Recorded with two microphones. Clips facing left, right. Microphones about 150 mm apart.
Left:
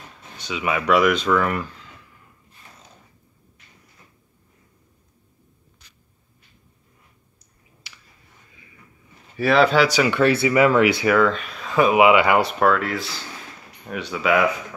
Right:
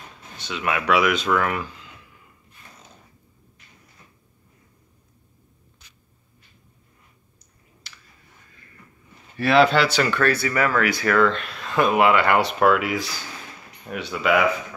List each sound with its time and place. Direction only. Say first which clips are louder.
0.5 s speech: left 2 dB; centre (ahead or behind)
9.4 s speech: left 1 dB; centre (ahead or behind)
10.1 s speech: left 4 dB; 20° left (ahead or behind)
11.1 s speech: left 1 dB; 5° left (ahead or behind)
12.5 s speech: right 1 dB; 5° right (ahead or behind)